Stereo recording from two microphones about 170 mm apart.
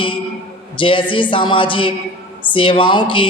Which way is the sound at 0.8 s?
30° left (ahead or behind).